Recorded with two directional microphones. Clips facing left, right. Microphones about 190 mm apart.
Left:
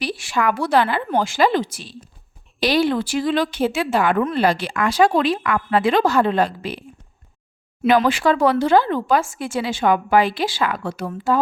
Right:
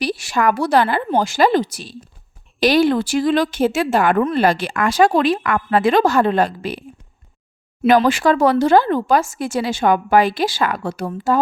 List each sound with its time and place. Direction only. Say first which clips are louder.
0.0 s a woman's voice: right 3 dB; 40° right (ahead or behind)
7.9 s speech: right 2 dB; 45° right (ahead or behind)